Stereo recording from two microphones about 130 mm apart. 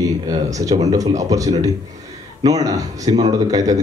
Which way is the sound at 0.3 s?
25° right (ahead or behind).